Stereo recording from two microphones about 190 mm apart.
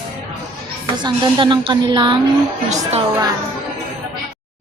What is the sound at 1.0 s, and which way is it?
A woman's voice, 25° right (ahead or behind).